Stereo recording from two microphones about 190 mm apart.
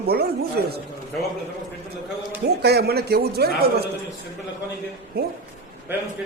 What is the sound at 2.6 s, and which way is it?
A man's voice, 60° right (ahead or behind).